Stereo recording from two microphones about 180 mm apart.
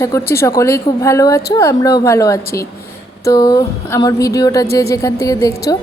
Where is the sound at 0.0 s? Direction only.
15° left (ahead or behind).